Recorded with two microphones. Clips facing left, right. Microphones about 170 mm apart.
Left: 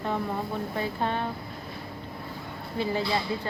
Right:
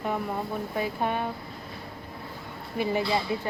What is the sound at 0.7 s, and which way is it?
Speech, 10° right (ahead or behind).